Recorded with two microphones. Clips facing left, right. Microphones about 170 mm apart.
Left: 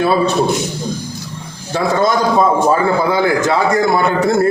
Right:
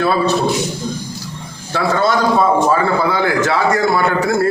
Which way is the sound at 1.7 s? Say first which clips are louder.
Left 1 dB; 15° left (ahead or behind).